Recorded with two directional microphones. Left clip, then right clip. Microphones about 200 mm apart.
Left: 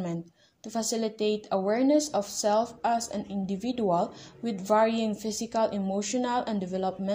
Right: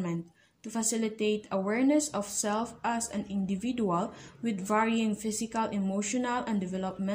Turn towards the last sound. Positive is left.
turn(degrees=0)  # may be behind; listen again after turning